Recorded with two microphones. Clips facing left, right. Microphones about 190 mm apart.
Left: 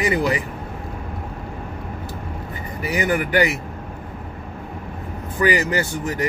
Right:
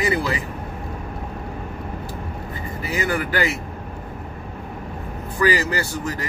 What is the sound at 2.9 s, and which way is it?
Speech, 20° left (ahead or behind).